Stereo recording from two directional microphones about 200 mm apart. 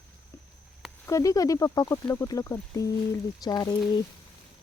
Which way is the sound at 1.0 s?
15° left (ahead or behind).